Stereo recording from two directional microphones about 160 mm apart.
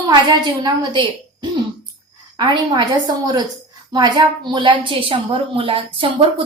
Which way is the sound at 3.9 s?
25° right (ahead or behind).